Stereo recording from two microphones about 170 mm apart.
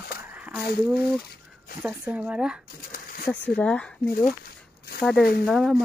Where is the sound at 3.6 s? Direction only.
5° left (ahead or behind).